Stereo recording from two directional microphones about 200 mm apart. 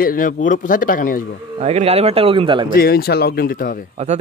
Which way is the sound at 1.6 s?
30° right (ahead or behind).